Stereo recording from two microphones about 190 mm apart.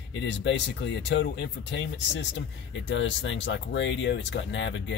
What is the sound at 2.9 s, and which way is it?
Speech, 75° left (ahead or behind).